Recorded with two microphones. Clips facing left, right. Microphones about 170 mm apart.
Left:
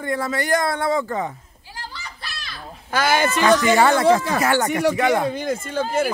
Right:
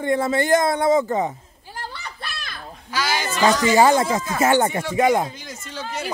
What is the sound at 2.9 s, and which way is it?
Speech, 55° left (ahead or behind).